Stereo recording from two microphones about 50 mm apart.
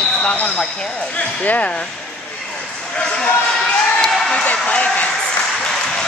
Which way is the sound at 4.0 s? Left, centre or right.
Centre.